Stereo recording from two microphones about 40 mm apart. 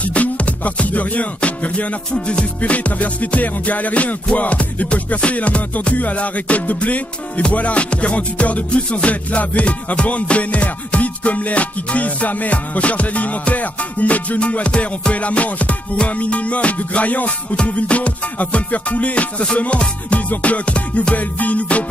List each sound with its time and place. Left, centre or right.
0.0 s music: left
21.1 s music: left